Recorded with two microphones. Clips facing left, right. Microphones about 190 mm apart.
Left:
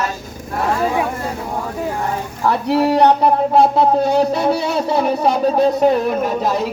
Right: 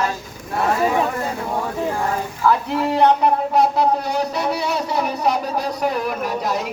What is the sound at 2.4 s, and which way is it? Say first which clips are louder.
Music: left 3 dB; 35° left (ahead or behind).